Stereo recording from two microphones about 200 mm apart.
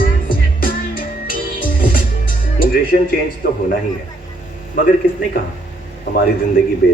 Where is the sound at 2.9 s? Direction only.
50° left (ahead or behind).